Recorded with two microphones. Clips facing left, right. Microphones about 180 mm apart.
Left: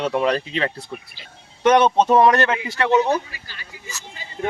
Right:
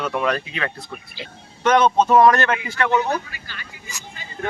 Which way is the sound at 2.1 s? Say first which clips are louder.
Even; 25° left (ahead or behind).